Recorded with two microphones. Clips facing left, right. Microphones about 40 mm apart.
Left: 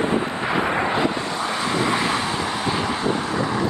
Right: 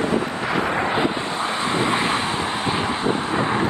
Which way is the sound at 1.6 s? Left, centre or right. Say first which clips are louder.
Even; right.